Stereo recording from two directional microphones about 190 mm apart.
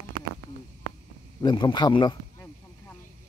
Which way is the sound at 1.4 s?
25° left (ahead or behind).